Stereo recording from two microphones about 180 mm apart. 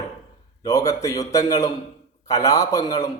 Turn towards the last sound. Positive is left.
turn(degrees=20)  # may be behind; listen again after turning